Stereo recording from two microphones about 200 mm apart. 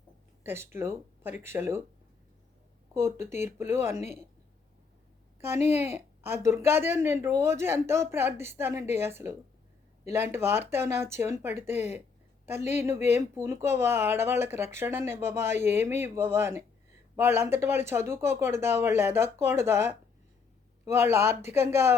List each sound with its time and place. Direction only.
0.4 s a woman's voice: 10° right (ahead or behind)
2.9 s a woman's voice: 15° right (ahead or behind)
5.4 s a woman's voice: 10° right (ahead or behind)
12.5 s speech: 35° left (ahead or behind)
12.8 s a woman's voice: 10° right (ahead or behind)